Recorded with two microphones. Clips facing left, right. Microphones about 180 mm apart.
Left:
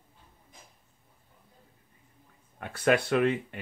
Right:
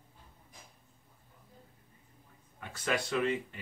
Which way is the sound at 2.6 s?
60° left (ahead or behind).